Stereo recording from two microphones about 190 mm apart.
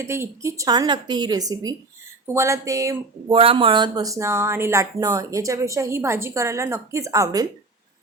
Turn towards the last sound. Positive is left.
turn(degrees=-20)  # may be behind; listen again after turning